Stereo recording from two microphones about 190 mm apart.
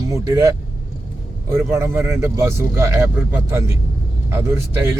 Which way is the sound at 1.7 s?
15° right (ahead or behind).